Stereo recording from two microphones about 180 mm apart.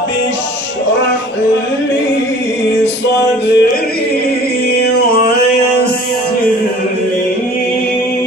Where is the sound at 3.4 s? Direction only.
65° left (ahead or behind).